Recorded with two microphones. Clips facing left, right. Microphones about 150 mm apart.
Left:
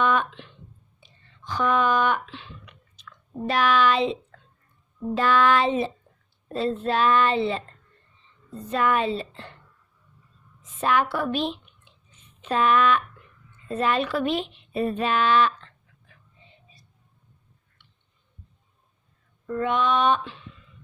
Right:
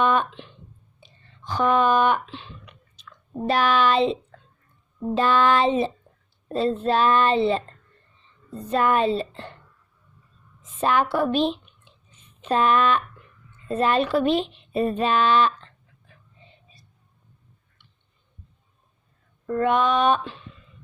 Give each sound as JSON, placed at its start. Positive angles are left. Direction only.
{"t": 0.0, "sound": "a sound", "side_deg": -30}
{"t": 1.0, "sound": "speech", "side_deg": -30}
{"t": 5.1, "sound": "child singing", "side_deg": -25}
{"t": 6.5, "sound": "speech", "side_deg": -30}
{"t": 10.6, "sound": "speech", "side_deg": -30}
{"t": 19.5, "sound": "female singing", "side_deg": -50}